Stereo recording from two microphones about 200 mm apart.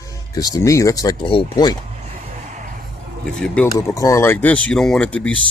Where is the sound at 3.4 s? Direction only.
5° left (ahead or behind).